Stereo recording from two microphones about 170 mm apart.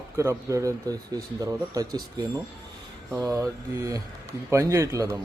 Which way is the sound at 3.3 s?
20° right (ahead or behind).